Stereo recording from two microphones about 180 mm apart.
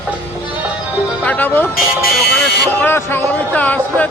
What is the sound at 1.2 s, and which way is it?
Speech, 10° left (ahead or behind).